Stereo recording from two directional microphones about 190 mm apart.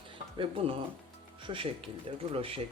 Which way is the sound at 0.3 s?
30° right (ahead or behind).